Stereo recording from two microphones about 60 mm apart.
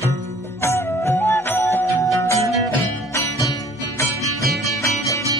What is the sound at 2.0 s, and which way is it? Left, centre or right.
Music, left.